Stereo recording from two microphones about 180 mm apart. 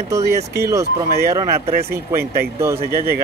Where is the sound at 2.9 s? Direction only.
55° right (ahead or behind).